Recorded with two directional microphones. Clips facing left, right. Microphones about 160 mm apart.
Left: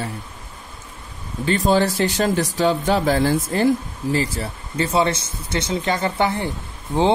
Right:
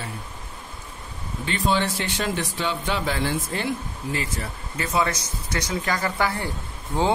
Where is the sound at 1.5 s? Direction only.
40° left (ahead or behind).